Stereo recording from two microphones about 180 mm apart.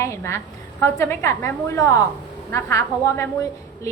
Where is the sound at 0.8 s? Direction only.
15° left (ahead or behind).